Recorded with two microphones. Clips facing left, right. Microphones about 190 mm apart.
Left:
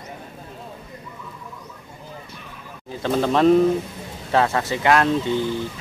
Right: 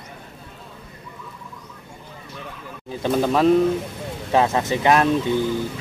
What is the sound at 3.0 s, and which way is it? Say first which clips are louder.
Speech: left 1 dB; 10° right (ahead or behind).